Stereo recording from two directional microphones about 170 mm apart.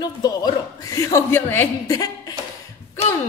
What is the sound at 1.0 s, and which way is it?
Speech, 15° left (ahead or behind).